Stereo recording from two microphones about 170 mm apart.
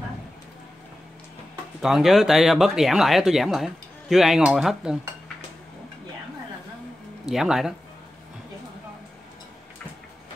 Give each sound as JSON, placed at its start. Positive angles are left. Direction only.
{"t": 1.8, "sound": "speech", "side_deg": 0}
{"t": 7.2, "sound": "speech", "side_deg": 0}